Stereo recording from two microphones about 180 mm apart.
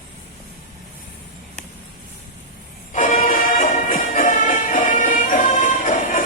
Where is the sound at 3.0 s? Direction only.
50° left (ahead or behind).